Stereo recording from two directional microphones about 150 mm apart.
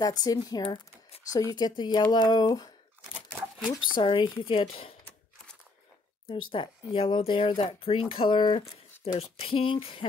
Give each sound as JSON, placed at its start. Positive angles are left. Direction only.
{"t": 0.0, "sound": "speech", "side_deg": 25}
{"t": 4.0, "sound": "speech", "side_deg": 35}
{"t": 6.2, "sound": "speech", "side_deg": 35}